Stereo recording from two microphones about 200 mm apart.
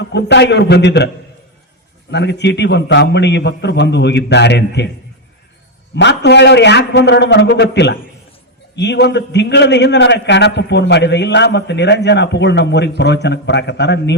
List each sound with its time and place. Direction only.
0.0 s a man's voice: 60° left (ahead or behind)
6.0 s a man's voice: 60° left (ahead or behind)